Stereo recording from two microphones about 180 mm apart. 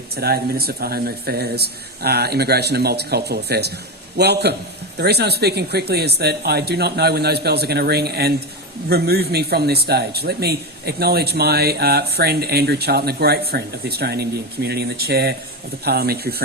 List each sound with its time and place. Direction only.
0.2 s speech: 60° right (ahead or behind)